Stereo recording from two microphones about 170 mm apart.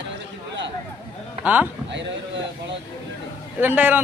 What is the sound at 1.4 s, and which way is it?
Speech, 10° right (ahead or behind).